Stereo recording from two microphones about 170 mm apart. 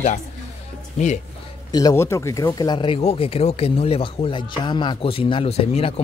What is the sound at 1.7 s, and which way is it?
Speech, 20° left (ahead or behind).